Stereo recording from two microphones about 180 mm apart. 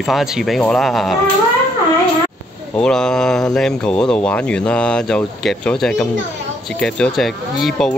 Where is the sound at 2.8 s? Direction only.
5° left (ahead or behind).